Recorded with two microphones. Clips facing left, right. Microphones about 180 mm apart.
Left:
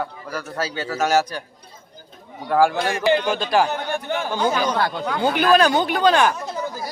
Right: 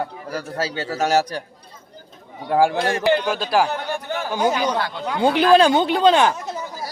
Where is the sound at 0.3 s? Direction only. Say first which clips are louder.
Right 2 dB; 35° right (ahead or behind).